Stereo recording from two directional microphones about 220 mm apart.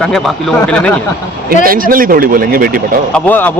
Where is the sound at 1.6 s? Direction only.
40° right (ahead or behind).